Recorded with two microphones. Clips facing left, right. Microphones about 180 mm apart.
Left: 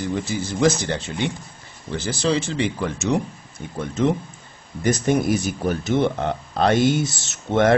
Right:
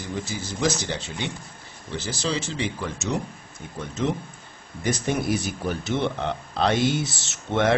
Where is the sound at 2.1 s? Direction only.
55° left (ahead or behind).